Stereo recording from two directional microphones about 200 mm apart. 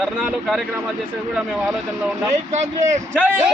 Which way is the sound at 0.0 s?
Centre (ahead or behind).